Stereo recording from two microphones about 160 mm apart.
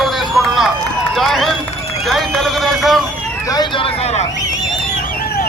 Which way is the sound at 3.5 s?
30° left (ahead or behind).